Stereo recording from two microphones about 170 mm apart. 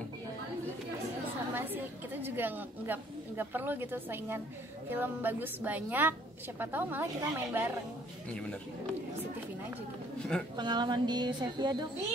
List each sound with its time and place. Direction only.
1.5 s chatter: 10° right (ahead or behind)
2.2 s speech: 10° right (ahead or behind)
10.1 s a sound: 5° left (ahead or behind)
10.5 s a woman's voice: 25° right (ahead or behind)